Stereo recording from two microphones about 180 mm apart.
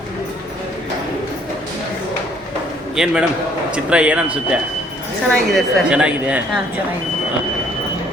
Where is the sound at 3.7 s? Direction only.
5° right (ahead or behind).